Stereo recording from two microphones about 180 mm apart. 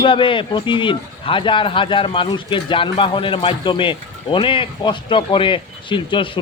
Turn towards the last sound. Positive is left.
turn(degrees=25)  # may be behind; listen again after turning